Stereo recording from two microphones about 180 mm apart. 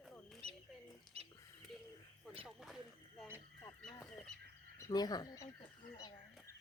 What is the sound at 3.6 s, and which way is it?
Fowl, 15° left (ahead or behind).